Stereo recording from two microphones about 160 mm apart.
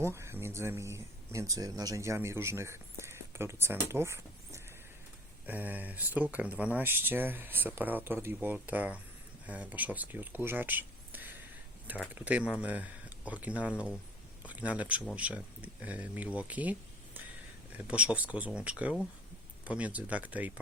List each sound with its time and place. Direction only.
0.0 s speech: 15° right (ahead or behind)
17.7 s speech: 5° right (ahead or behind)